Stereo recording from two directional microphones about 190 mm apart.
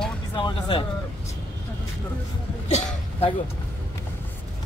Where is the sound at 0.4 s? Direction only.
25° left (ahead or behind).